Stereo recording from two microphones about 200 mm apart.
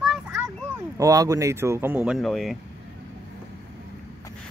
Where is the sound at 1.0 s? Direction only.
15° right (ahead or behind); by 2.6 s centre (ahead or behind).